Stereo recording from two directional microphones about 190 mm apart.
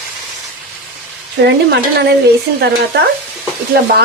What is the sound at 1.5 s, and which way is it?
Speech, 60° right (ahead or behind).